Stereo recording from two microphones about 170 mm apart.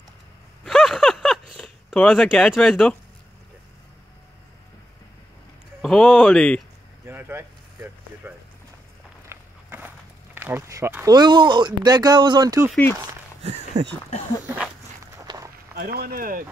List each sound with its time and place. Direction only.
0.7 s a sound: centre (ahead or behind)
5.8 s speech: centre (ahead or behind)
7.1 s speech: 15° right (ahead or behind)
13.4 s speech: 40° right (ahead or behind)
15.2 s walk: 20° right (ahead or behind)
15.7 s speech: 65° right (ahead or behind)